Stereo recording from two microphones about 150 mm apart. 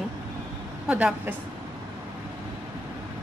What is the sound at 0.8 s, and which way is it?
Speech, 10° right (ahead or behind).